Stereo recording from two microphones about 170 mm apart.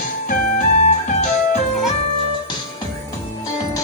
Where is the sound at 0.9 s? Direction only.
45° left (ahead or behind).